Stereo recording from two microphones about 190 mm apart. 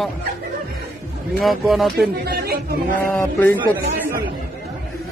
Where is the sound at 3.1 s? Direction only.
10° left (ahead or behind).